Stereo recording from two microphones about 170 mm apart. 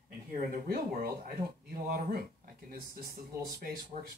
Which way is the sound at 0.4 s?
60° right (ahead or behind).